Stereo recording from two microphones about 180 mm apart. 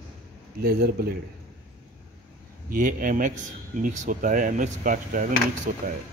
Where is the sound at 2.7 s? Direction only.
50° right (ahead or behind).